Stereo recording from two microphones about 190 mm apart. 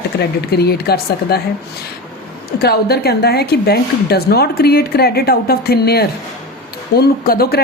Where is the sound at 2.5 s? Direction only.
55° left (ahead or behind).